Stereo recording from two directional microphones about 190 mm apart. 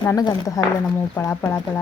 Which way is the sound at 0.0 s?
15° left (ahead or behind).